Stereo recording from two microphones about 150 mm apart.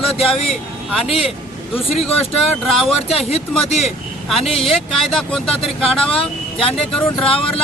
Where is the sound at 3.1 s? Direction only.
40° left (ahead or behind).